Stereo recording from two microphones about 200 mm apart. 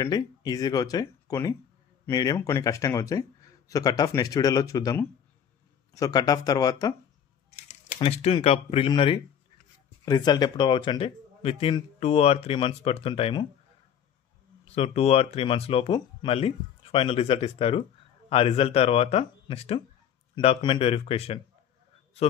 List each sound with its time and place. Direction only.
0.0 s speech: 20° left (ahead or behind)
7.5 s a sound: 40° left (ahead or behind)
8.0 s speech: 30° left (ahead or behind)
14.7 s speech: 30° left (ahead or behind)